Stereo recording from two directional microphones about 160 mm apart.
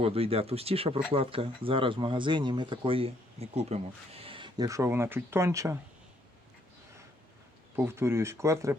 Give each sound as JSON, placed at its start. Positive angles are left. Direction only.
{"t": 0.0, "sound": "speech", "side_deg": -35}
{"t": 7.8, "sound": "speech", "side_deg": -15}